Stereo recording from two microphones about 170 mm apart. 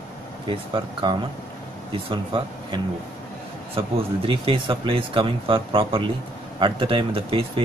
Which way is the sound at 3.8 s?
30° right (ahead or behind).